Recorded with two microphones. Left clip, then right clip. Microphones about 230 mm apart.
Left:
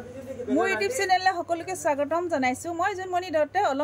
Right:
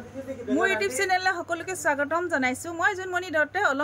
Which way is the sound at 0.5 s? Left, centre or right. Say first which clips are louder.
Even; centre.